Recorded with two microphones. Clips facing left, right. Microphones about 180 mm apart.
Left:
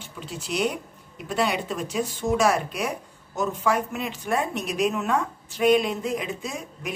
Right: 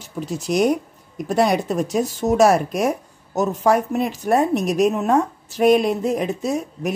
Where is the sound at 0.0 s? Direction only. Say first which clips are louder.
Right 9 dB; 45° right (ahead or behind).